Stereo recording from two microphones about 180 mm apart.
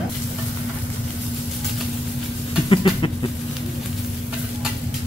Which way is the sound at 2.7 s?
25° left (ahead or behind).